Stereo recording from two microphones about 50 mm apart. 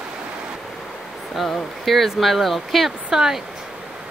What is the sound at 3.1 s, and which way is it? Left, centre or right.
Speech, centre.